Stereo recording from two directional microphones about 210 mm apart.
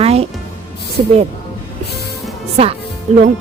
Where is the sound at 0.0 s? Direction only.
30° right (ahead or behind).